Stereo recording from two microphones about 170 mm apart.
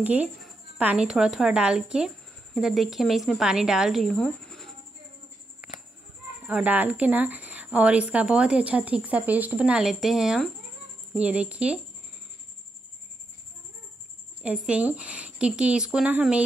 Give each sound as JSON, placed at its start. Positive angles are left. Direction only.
{"t": 0.0, "sound": "speech", "side_deg": -10}
{"t": 6.4, "sound": "a woman's voice", "side_deg": -10}
{"t": 14.4, "sound": "a woman's voice", "side_deg": -5}